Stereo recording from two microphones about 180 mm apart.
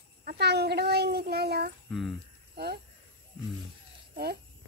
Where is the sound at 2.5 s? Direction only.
60° right (ahead or behind).